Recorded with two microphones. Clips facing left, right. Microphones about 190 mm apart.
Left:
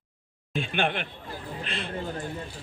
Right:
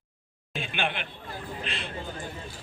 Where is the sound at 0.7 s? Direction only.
45° left (ahead or behind).